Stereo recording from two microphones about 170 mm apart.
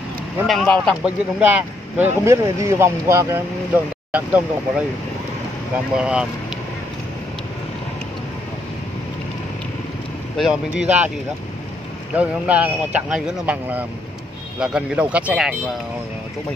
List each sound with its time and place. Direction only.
0.5 s speech: 5° left (ahead or behind)
1.0 s speech: 10° right (ahead or behind)
5.9 s speech: 5° right (ahead or behind)
10.3 s speech: centre (ahead or behind)
12.1 s speech: 10° right (ahead or behind)